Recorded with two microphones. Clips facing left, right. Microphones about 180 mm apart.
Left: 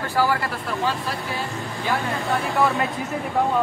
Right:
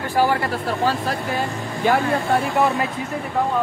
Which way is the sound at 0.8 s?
45° right (ahead or behind).